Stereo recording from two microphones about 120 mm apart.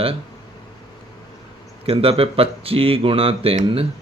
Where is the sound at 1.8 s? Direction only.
55° right (ahead or behind).